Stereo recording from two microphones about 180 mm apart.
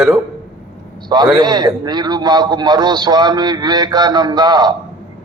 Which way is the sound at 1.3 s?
25° right (ahead or behind).